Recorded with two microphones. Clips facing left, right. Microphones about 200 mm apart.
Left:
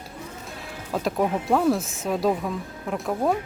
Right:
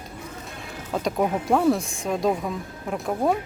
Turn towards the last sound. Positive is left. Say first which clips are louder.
# even
turn(degrees=0)  # may be behind; listen again after turning